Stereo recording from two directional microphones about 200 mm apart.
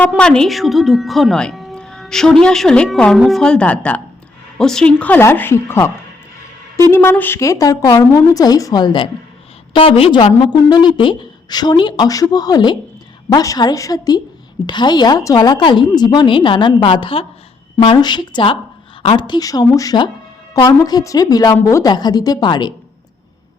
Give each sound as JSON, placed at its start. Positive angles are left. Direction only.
{"t": 0.1, "sound": "a woman's voice", "side_deg": 5}
{"t": 6.9, "sound": "a woman's voice", "side_deg": 10}